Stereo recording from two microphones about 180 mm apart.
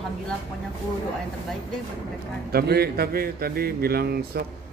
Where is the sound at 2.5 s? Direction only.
60° right (ahead or behind).